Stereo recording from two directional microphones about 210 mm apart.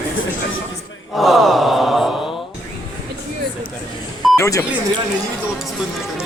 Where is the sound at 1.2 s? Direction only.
Centre (ahead or behind).